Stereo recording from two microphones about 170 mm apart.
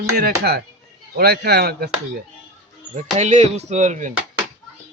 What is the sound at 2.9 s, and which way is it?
Speech, 45° right (ahead or behind).